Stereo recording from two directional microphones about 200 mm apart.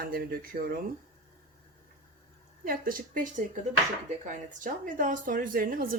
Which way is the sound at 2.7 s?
45° right (ahead or behind).